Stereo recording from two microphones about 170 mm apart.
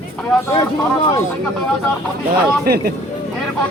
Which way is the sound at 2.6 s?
65° right (ahead or behind).